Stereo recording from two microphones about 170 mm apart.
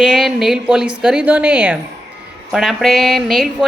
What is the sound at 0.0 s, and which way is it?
A woman's voice, centre (ahead or behind).